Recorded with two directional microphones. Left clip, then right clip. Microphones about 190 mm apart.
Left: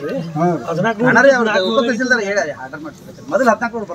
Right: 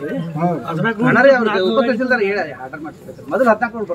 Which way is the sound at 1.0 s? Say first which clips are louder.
Even; 30° right (ahead or behind).